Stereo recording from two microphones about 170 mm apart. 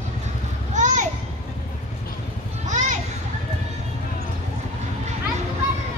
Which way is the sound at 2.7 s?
45° right (ahead or behind).